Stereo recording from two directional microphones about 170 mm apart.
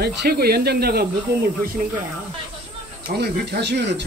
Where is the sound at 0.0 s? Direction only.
70° right (ahead or behind).